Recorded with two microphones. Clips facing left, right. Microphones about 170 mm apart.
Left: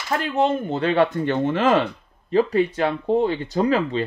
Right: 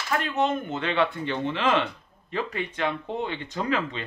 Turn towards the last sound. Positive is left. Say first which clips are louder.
# left 8 dB
turn(degrees=35)  # may be behind; listen again after turning